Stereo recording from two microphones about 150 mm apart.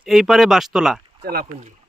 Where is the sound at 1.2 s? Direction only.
90° right.